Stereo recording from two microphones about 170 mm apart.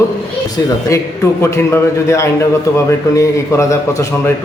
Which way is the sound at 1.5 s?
15° left (ahead or behind).